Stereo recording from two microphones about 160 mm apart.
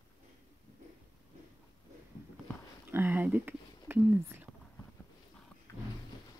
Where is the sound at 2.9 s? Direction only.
10° right (ahead or behind).